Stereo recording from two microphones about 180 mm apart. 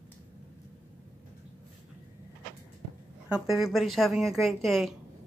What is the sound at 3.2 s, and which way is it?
A woman's voice, 5° right (ahead or behind).